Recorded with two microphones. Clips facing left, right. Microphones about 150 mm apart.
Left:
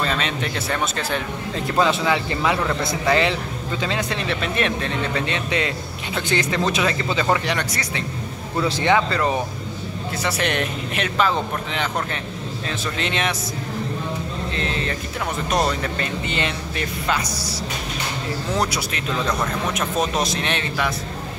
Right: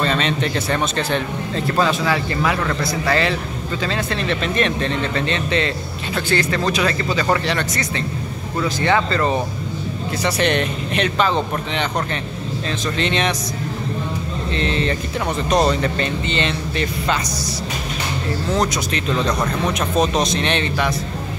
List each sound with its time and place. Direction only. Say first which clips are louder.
0.0 s speech: right 4 dB; 5° left (ahead or behind)
1.8 s speech: even; 20° left (ahead or behind)
14.5 s speech: right 7 dB; 5° left (ahead or behind)
18.6 s speech: right 3 dB; 10° left (ahead or behind)